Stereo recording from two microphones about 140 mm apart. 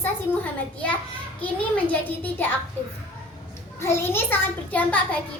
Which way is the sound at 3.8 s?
20° left (ahead or behind).